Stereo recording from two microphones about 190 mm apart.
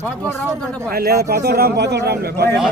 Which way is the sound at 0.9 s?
55° right (ahead or behind).